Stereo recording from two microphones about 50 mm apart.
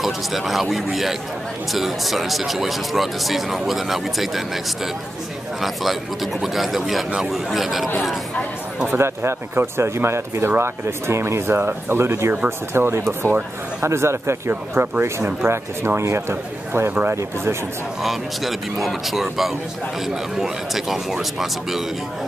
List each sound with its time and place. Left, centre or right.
0.0 s speech: centre
6.4 s speech: centre
8.9 s speech: right
13.8 s speech: right
16.0 s speech: right
18.0 s speech: centre